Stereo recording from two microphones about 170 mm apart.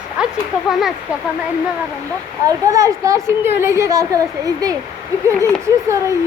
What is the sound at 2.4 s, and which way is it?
A woman's voice, 20° right (ahead or behind).